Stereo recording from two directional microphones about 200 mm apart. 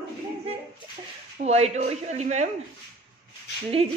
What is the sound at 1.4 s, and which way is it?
Speech, 35° right (ahead or behind).